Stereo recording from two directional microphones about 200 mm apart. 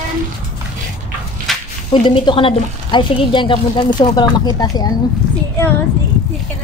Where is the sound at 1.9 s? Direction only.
25° left (ahead or behind).